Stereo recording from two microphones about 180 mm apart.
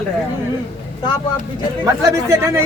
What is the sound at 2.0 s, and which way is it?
Speech, 20° right (ahead or behind).